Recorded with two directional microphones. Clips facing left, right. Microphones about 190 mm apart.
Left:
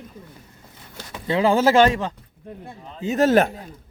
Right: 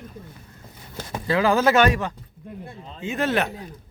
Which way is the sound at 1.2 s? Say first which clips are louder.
Left 2 dB; 25° left (ahead or behind).